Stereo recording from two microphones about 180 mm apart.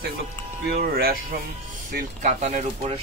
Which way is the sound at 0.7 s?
60° right (ahead or behind).